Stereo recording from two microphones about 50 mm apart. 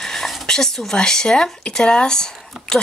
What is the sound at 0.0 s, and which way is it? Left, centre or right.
A woman's voice, centre.